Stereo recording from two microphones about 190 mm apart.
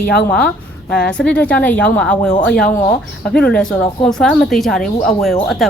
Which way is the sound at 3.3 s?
5° left (ahead or behind).